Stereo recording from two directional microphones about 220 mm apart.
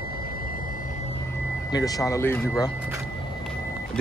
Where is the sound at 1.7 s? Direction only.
15° left (ahead or behind).